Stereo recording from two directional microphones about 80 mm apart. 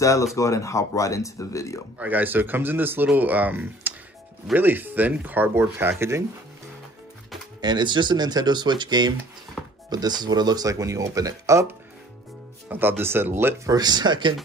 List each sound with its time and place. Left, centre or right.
0.0 s speech: left
2.0 s speech: right
7.6 s speech: right
12.6 s speech: right
13.7 s speech: right